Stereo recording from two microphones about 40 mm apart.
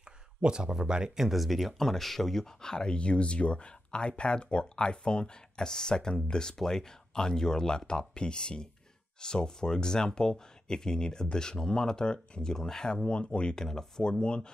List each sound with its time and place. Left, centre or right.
0.4 s speech: right
1.1 s speech: centre
12.9 s speech: left
14.2 s speech: left